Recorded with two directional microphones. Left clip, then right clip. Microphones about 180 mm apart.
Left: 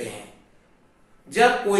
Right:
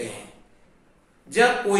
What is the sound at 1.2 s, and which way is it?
Speech, 10° right (ahead or behind).